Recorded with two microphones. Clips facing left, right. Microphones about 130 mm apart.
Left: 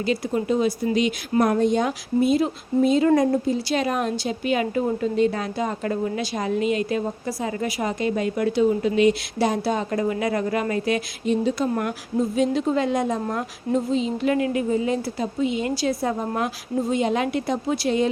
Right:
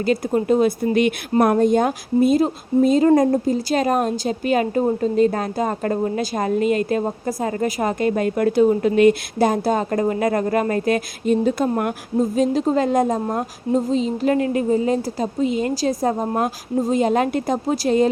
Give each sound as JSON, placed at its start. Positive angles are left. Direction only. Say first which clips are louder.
{"t": 0.0, "sound": "a woman's voice", "louder": "right 4 dB", "side_deg": -45}